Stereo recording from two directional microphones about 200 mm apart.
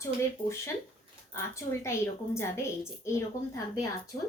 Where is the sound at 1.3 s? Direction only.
15° left (ahead or behind).